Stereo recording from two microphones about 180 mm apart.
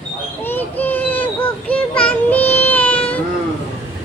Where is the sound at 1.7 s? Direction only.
5° left (ahead or behind).